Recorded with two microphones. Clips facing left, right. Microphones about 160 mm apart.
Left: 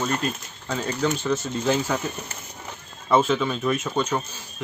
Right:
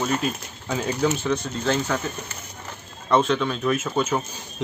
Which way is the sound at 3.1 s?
5° left (ahead or behind).